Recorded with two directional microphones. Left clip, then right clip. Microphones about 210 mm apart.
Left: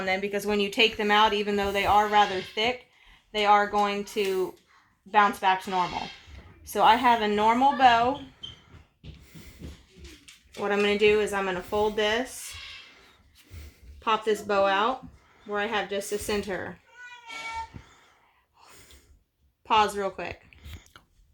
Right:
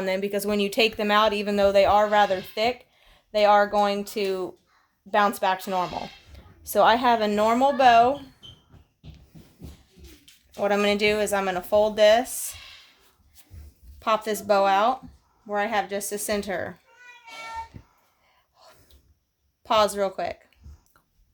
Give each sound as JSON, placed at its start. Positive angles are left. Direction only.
{"t": 0.0, "sound": "speech", "side_deg": -50}
{"t": 10.6, "sound": "speech", "side_deg": -50}
{"t": 14.0, "sound": "speech", "side_deg": -45}
{"t": 19.6, "sound": "speech", "side_deg": -50}